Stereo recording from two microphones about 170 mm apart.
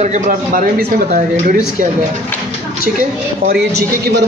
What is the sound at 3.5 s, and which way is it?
Speech, 70° right (ahead or behind).